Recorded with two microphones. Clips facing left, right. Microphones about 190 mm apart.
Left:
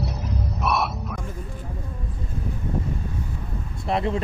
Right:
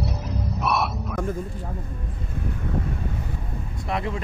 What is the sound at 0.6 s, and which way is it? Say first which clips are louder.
Music: even; centre (ahead or behind).